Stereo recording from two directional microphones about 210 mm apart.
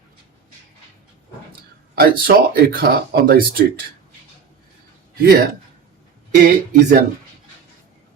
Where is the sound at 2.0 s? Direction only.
45° right (ahead or behind).